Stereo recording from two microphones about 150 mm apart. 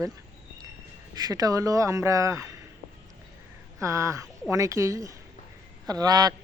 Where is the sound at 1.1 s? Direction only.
25° right (ahead or behind).